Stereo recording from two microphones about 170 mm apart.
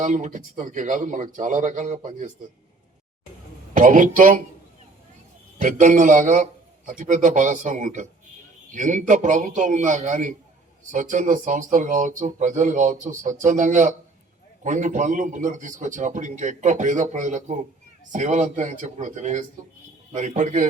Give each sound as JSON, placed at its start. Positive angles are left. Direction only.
{"t": 0.0, "sound": "a man's voice", "side_deg": -45}
{"t": 3.8, "sound": "a man's voice", "side_deg": -50}
{"t": 5.5, "sound": "a man's voice", "side_deg": -50}